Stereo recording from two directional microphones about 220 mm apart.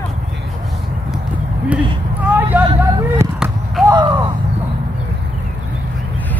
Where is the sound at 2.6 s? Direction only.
15° right (ahead or behind).